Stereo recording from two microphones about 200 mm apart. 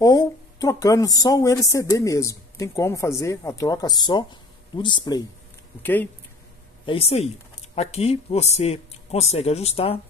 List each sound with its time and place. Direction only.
0.0 s speech: 20° left (ahead or behind)
5.8 s speech: 10° left (ahead or behind)
6.9 s speech: 30° left (ahead or behind)